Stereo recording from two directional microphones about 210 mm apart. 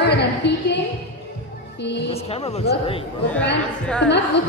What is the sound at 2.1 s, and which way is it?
Speech, 30° left (ahead or behind).